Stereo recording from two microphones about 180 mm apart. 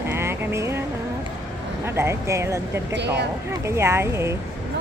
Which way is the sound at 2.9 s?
70° right (ahead or behind).